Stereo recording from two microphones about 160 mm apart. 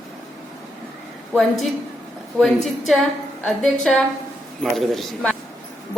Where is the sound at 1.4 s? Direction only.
Centre (ahead or behind).